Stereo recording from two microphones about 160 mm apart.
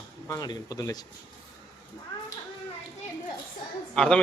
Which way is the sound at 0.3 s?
25° left (ahead or behind).